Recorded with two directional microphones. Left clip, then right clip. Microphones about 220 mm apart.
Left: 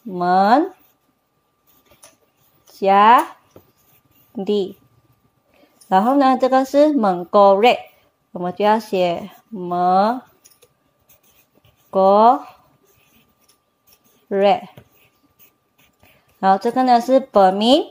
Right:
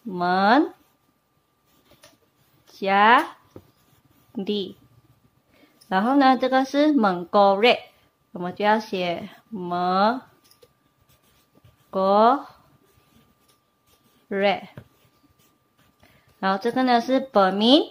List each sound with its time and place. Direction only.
0.2 s a woman's voice: 15° left (ahead or behind)
2.8 s a woman's voice: 15° left (ahead or behind)
5.9 s a woman's voice: 15° left (ahead or behind)
11.9 s a woman's voice: 15° left (ahead or behind)
14.3 s a woman's voice: 15° left (ahead or behind)
16.3 s a woman's voice: 15° left (ahead or behind)